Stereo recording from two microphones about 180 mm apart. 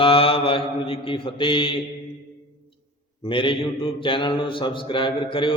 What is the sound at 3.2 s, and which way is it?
A man's voice, 30° left (ahead or behind).